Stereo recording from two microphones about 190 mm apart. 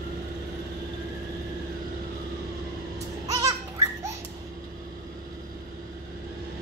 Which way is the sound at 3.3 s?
20° right (ahead or behind).